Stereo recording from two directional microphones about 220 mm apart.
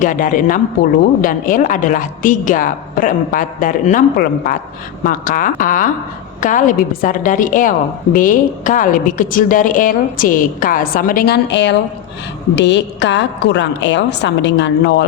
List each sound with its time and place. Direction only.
0.0 s a woman's voice: 35° left (ahead or behind); by 15.0 s 50° left (ahead or behind)